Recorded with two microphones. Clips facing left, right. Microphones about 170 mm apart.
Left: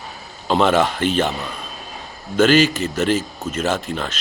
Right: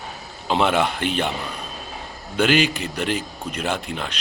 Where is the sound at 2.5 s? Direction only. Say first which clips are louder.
Left 5 dB; 45° left (ahead or behind).